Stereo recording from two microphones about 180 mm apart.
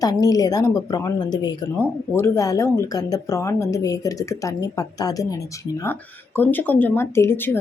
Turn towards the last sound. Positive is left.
turn(degrees=10)  # may be behind; listen again after turning